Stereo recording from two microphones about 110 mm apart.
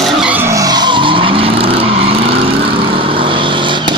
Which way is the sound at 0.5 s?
35° right (ahead or behind).